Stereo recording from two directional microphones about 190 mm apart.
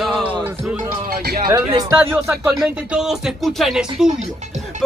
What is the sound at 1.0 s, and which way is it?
Speech, 55° right (ahead or behind).